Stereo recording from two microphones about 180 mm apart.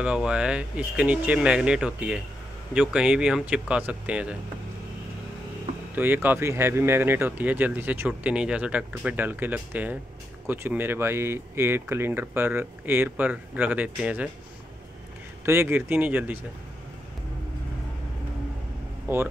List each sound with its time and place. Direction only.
0.0 s speech: 5° right (ahead or behind)
5.9 s speech: 10° right (ahead or behind)
15.4 s speech: 15° right (ahead or behind)